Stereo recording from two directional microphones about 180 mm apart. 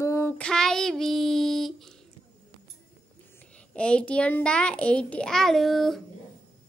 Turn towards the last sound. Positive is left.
turn(degrees=0)  # may be behind; listen again after turning